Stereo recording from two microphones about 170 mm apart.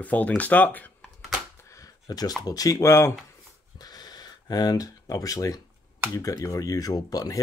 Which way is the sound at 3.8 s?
25° left (ahead or behind).